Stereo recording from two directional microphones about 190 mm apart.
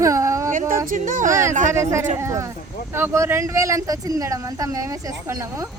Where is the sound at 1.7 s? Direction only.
15° right (ahead or behind).